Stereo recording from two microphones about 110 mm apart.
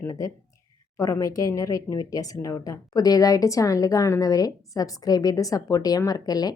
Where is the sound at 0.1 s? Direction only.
35° left (ahead or behind).